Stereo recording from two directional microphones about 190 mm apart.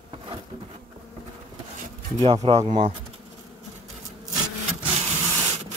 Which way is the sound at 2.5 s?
25° right (ahead or behind).